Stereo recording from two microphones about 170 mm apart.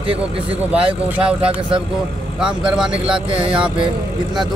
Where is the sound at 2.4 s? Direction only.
5° right (ahead or behind).